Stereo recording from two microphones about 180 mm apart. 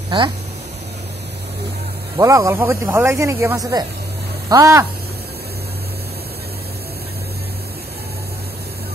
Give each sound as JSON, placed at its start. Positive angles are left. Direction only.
{"t": 0.1, "sound": "speech", "side_deg": -30}
{"t": 2.1, "sound": "speech", "side_deg": -15}